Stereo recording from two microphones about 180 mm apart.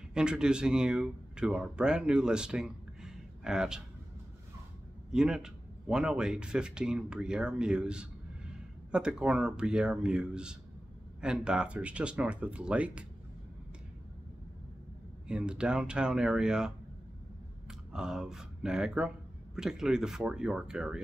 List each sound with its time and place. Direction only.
0.1 s speech: 5° right (ahead or behind)
5.1 s speech: 5° right (ahead or behind)
15.2 s speech: 5° right (ahead or behind)